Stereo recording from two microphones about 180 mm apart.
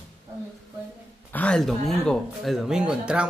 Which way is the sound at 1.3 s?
10° left (ahead or behind).